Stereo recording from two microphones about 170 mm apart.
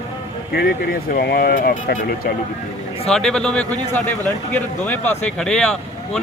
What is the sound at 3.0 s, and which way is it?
A man's voice, 5° left (ahead or behind).